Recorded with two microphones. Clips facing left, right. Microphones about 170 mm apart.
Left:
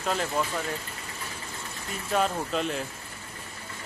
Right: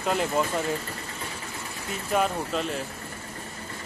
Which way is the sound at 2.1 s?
Centre (ahead or behind).